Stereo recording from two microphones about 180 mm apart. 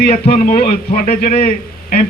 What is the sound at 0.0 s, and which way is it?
A man's voice, 50° left (ahead or behind).